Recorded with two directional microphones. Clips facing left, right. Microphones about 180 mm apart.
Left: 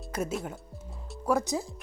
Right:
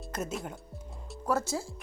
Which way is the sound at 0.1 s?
10° left (ahead or behind).